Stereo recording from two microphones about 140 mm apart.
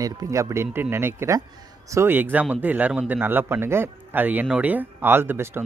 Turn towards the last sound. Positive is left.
turn(degrees=-15)  # may be behind; listen again after turning